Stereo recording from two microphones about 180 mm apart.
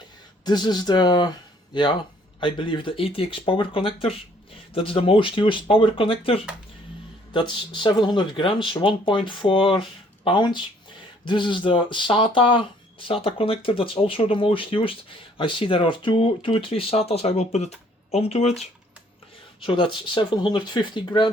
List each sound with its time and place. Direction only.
0.4 s speech: 25° left (ahead or behind)
19.5 s speech: 30° left (ahead or behind)